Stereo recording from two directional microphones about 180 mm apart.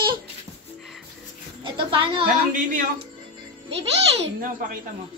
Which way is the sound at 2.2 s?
50° right (ahead or behind).